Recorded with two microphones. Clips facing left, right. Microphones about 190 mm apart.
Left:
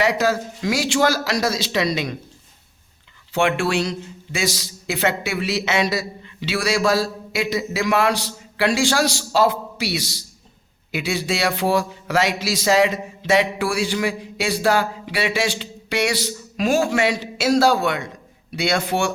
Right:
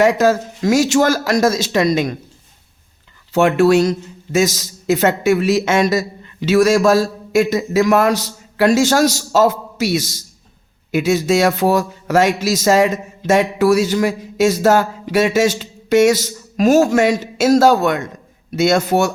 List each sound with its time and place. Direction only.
0.0 s speech: 50° right (ahead or behind)
3.3 s a man's voice: 40° right (ahead or behind)